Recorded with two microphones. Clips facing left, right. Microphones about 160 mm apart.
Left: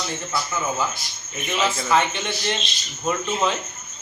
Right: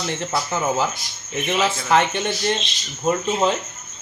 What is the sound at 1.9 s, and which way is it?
Speech, 55° right (ahead or behind).